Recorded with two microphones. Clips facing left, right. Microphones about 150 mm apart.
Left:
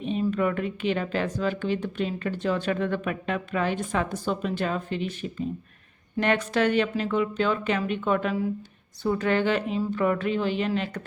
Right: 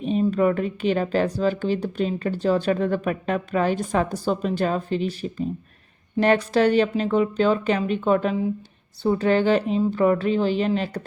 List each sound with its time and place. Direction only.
0.0 s speech: 35° right (ahead or behind)